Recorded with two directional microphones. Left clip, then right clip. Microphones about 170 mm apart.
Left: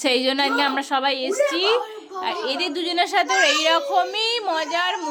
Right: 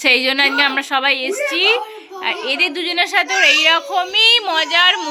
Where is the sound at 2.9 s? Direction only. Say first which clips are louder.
Right 2 dB; 10° left (ahead or behind).